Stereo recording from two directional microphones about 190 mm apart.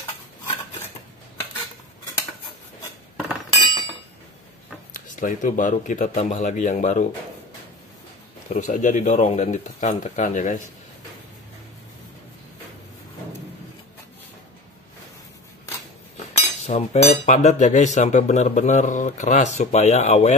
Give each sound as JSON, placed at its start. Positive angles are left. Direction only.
{"t": 3.4, "sound": "chink", "side_deg": 25}
{"t": 4.9, "sound": "speech", "side_deg": 45}
{"t": 8.5, "sound": "speech", "side_deg": 45}
{"t": 16.2, "sound": "speech", "side_deg": 35}